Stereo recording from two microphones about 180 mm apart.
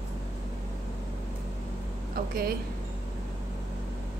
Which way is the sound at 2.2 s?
55° right (ahead or behind).